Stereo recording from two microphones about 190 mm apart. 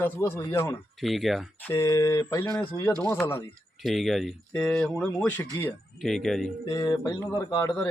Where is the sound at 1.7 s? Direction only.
15° left (ahead or behind).